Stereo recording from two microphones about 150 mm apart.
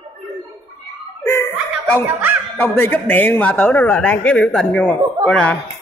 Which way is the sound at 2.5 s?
10° left (ahead or behind).